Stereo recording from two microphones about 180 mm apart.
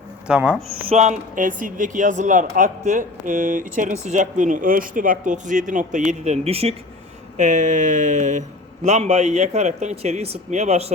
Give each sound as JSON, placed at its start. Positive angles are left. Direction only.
{"t": 0.3, "sound": "speech", "side_deg": -5}
{"t": 0.9, "sound": "speech", "side_deg": -40}